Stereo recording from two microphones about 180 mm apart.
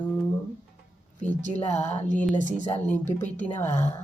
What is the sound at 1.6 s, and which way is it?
Speech, 35° left (ahead or behind).